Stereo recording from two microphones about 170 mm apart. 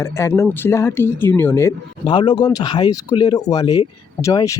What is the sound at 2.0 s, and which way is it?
Speech, 25° left (ahead or behind).